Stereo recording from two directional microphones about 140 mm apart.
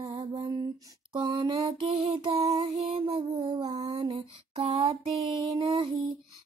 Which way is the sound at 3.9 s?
45° right (ahead or behind).